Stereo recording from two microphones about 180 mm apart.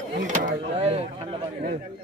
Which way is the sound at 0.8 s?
35° right (ahead or behind).